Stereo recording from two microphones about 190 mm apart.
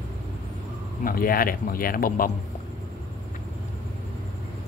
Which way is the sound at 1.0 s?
50° left (ahead or behind).